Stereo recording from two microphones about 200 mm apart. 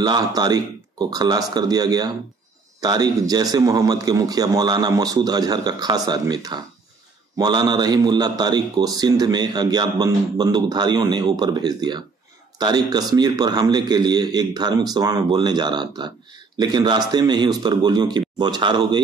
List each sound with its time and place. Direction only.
0.0 s a man's voice: 20° right (ahead or behind)